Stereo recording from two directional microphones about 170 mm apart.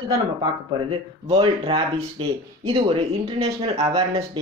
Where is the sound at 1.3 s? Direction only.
35° right (ahead or behind).